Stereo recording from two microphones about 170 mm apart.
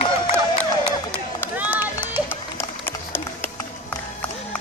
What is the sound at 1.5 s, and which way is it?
Run, 10° right (ahead or behind).